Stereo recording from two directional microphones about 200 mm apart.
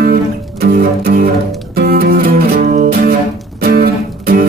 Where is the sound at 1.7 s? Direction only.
50° right (ahead or behind).